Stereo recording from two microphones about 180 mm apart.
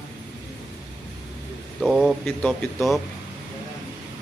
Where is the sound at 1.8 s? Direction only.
5° right (ahead or behind).